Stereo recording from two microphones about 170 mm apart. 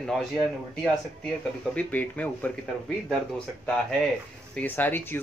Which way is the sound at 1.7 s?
10° left (ahead or behind).